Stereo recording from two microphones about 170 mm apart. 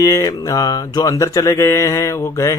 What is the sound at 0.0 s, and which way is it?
Mantra, 20° left (ahead or behind).